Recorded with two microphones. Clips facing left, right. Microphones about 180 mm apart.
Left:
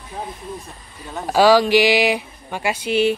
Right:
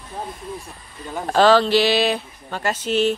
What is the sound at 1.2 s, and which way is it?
Speech, 10° left (ahead or behind).